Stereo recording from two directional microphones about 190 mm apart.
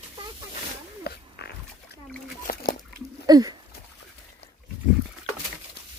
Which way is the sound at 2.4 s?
55° left (ahead or behind).